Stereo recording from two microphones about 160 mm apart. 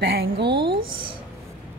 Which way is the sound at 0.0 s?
85° right.